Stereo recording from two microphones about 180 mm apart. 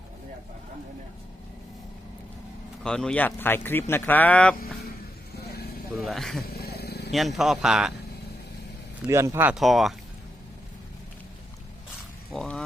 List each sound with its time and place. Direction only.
2.8 s speech: 5° left (ahead or behind)
5.3 s vehicle: 60° left (ahead or behind)
6.0 s speech: centre (ahead or behind)
6.5 s dog: 60° left (ahead or behind)
7.1 s speech: centre (ahead or behind)
9.0 s speech: 15° right (ahead or behind)
9.6 s speech: centre (ahead or behind)
12.3 s a sound: 5° left (ahead or behind)